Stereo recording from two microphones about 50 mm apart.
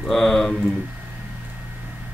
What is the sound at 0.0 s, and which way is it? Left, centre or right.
Speech, centre.